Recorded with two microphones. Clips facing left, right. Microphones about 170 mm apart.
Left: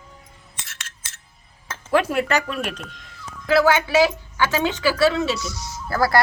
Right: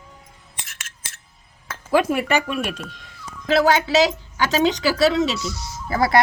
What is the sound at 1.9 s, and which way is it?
Speech, 10° right (ahead or behind).